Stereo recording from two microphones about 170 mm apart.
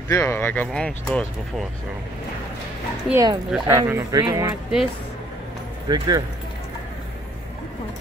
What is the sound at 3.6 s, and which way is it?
Speech, 25° right (ahead or behind).